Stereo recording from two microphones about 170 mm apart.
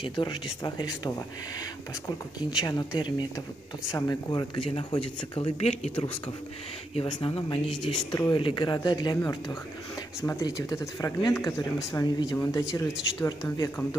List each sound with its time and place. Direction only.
0.0 s speech: 30° left (ahead or behind)
2.5 s speech: 20° left (ahead or behind)
7.6 s speech: centre (ahead or behind)
8.1 s speech: 20° left (ahead or behind)